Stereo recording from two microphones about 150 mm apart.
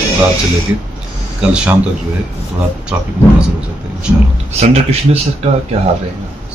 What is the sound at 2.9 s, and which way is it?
Speech, 10° right (ahead or behind).